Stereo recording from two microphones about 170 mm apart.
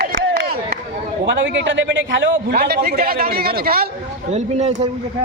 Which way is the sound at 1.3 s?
90° right.